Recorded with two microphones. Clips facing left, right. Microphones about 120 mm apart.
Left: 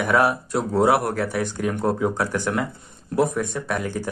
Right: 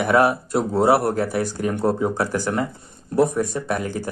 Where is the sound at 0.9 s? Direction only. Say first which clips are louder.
Right 2 dB; 40° right (ahead or behind).